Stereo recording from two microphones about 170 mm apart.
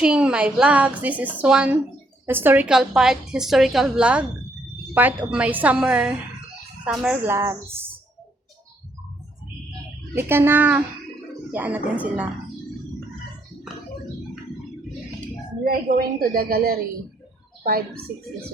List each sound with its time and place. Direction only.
0.0 s a woman's voice: 5° right (ahead or behind)
7.3 s a woman's voice: 15° right (ahead or behind)
10.2 s a woman's voice: 15° right (ahead or behind)
15.6 s a woman's voice: 60° right (ahead or behind)